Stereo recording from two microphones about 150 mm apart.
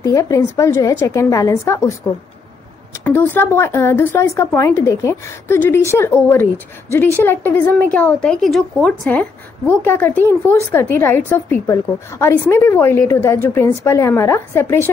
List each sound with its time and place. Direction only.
0.0 s a woman's voice: 20° left (ahead or behind)
3.0 s speech: 10° left (ahead or behind)